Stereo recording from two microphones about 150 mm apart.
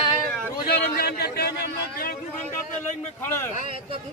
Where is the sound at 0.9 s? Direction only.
90° left.